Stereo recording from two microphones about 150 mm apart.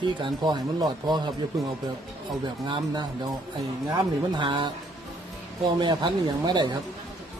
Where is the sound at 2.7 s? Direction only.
35° right (ahead or behind).